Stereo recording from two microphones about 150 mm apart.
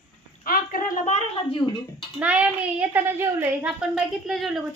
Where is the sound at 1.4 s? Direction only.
35° left (ahead or behind).